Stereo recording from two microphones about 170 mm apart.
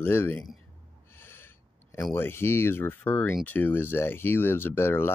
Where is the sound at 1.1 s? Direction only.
15° left (ahead or behind).